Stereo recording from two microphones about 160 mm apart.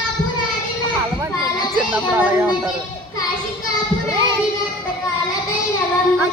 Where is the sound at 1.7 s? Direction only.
10° right (ahead or behind).